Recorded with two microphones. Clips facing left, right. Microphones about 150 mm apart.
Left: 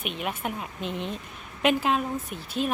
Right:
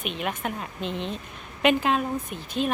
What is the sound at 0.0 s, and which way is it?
A woman's voice, 5° left (ahead or behind).